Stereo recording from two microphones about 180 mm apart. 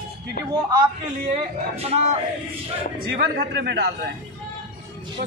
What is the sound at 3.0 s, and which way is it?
Speech, 60° right (ahead or behind).